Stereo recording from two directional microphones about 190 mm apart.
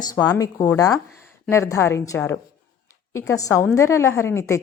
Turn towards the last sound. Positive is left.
turn(degrees=15)  # may be behind; listen again after turning